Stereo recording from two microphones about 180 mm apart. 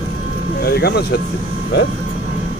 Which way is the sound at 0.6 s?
60° left (ahead or behind).